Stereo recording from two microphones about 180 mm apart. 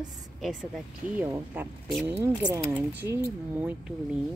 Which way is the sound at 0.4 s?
Centre (ahead or behind).